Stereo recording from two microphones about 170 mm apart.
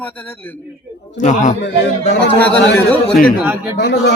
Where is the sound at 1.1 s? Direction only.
45° left (ahead or behind).